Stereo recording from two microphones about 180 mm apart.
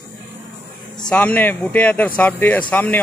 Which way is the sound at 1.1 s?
10° left (ahead or behind).